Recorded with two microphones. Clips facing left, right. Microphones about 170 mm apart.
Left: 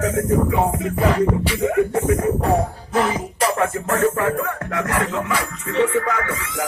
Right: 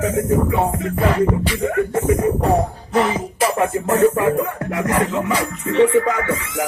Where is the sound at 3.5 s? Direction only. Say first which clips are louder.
Right 3 dB; 15° right (ahead or behind).